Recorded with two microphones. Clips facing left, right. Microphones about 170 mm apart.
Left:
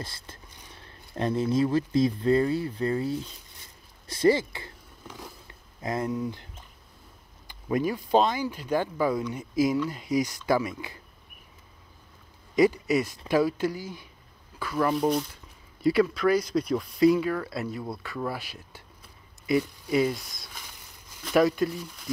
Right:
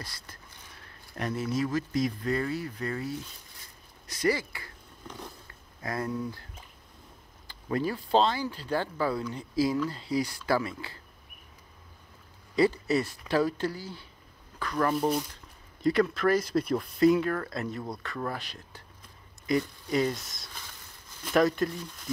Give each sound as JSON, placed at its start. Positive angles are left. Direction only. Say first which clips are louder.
{"t": 0.0, "sound": "speech", "louder": "left 4 dB", "side_deg": 25}
{"t": 5.0, "sound": "vehicle", "louder": "even", "side_deg": 5}
{"t": 5.5, "sound": "speech", "louder": "left 5 dB", "side_deg": 20}
{"t": 12.5, "sound": "speech", "louder": "left 3 dB", "side_deg": 15}